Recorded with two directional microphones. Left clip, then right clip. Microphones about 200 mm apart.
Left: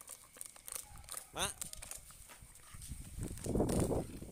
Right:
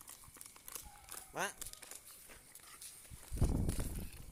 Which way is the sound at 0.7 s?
30° left (ahead or behind).